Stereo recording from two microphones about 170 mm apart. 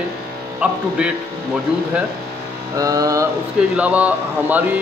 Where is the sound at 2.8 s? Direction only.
20° right (ahead or behind).